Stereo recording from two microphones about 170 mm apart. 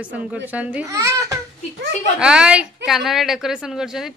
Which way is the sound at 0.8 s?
20° right (ahead or behind).